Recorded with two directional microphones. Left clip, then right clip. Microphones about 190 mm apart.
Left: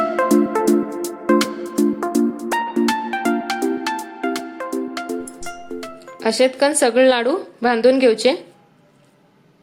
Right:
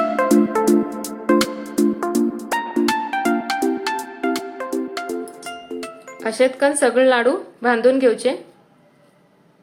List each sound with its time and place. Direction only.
0.2 s music: centre (ahead or behind)
6.1 s speech: 35° left (ahead or behind)